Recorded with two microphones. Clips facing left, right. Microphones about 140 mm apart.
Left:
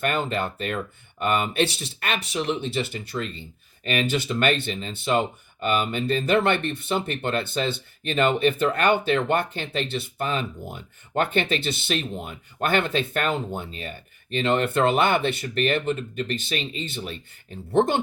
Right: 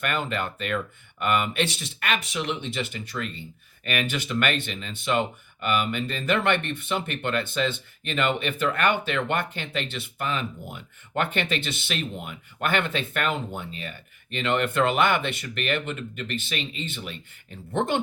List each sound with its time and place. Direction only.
0.0 s speech: 35° left (ahead or behind)